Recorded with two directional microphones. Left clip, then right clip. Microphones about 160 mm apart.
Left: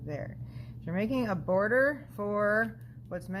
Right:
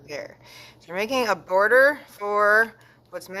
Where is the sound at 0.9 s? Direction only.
25° right (ahead or behind).